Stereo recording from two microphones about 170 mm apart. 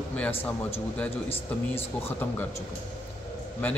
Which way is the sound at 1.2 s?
35° left (ahead or behind).